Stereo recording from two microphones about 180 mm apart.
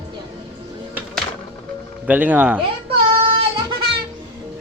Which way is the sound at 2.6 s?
30° right (ahead or behind).